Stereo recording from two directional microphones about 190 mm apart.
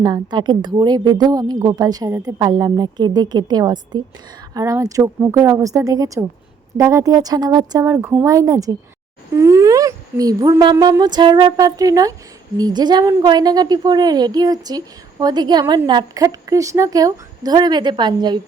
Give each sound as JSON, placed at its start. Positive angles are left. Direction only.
{"t": 0.0, "sound": "a woman's voice", "side_deg": -20}